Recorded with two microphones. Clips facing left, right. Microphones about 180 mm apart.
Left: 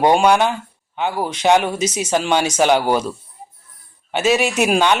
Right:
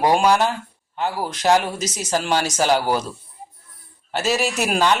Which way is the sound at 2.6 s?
65° left (ahead or behind).